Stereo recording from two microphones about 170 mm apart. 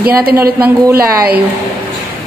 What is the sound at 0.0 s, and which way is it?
Speech, 65° right (ahead or behind).